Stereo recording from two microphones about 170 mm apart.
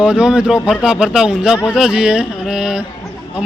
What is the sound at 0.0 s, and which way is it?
A man's voice, 5° right (ahead or behind).